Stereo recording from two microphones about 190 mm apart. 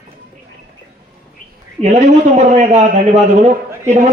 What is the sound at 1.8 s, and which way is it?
A man's voice, 35° right (ahead or behind).